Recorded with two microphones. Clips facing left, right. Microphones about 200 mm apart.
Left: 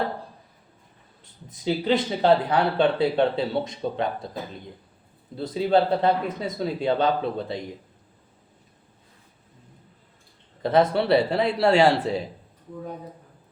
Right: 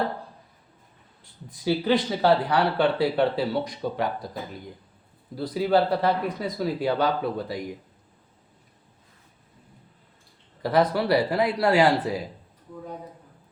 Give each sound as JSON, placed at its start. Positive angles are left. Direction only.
{"t": 1.2, "sound": "speech", "side_deg": 20}
{"t": 10.6, "sound": "speech", "side_deg": 25}